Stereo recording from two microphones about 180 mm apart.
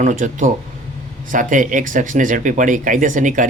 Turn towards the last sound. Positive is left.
turn(degrees=-45)  # may be behind; listen again after turning